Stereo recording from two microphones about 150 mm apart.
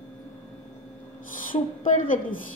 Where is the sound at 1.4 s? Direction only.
65° left (ahead or behind).